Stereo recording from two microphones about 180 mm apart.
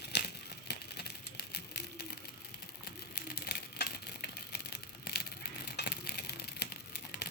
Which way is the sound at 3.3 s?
60° left (ahead or behind).